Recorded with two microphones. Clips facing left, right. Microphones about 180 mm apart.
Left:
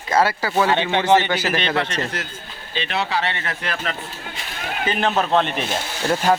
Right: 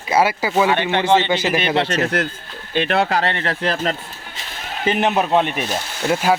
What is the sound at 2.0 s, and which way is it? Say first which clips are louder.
A man's voice: right 8 dB; 60° right (ahead or behind).